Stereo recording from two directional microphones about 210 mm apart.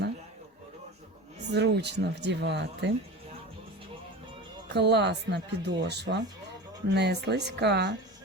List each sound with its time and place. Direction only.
1.5 s speech: 55° right (ahead or behind)
4.7 s speech: 55° right (ahead or behind)